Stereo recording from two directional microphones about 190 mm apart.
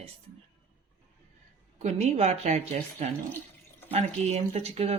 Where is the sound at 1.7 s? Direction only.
35° right (ahead or behind).